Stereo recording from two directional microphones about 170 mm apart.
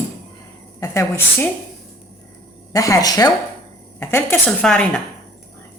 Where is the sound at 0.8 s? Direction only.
15° left (ahead or behind).